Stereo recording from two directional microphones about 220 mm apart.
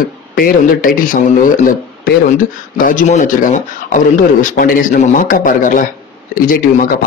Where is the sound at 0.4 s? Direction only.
40° left (ahead or behind).